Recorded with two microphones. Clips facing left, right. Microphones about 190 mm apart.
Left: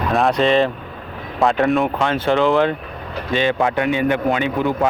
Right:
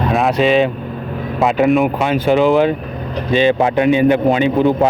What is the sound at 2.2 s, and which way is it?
A man's voice, 15° right (ahead or behind).